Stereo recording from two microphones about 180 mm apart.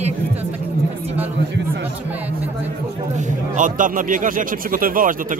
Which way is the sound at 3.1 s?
45° right (ahead or behind).